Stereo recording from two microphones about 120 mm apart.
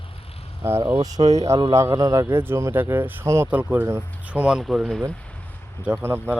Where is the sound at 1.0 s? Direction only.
30° right (ahead or behind); by 5.0 s centre (ahead or behind).